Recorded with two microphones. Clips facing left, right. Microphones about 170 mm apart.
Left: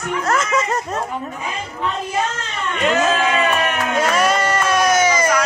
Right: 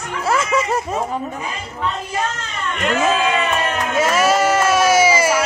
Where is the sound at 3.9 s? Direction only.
5° right (ahead or behind).